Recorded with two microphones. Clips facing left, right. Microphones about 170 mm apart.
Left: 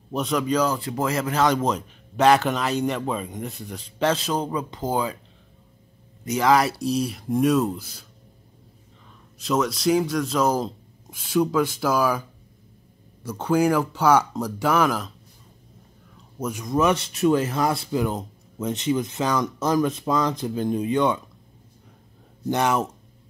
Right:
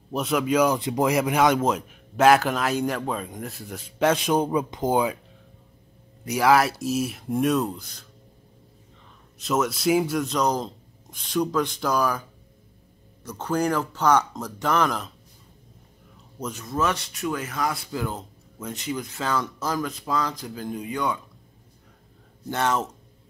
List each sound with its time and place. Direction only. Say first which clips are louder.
0.1 s speech: even; 5° right (ahead or behind)
6.2 s a man's voice: even; 10° right (ahead or behind); by 8.1 s 5° left (ahead or behind)
9.4 s a man's voice: left 1 dB; centre (ahead or behind)
16.3 s speech: left 4 dB; 10° left (ahead or behind)
22.5 s speech: left 3 dB; 15° left (ahead or behind)